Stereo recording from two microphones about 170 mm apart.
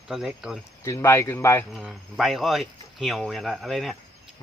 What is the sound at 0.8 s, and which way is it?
Speech, 15° left (ahead or behind).